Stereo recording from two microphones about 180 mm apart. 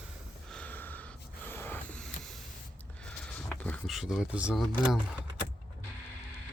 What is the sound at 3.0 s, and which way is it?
Speech, 5° left (ahead or behind).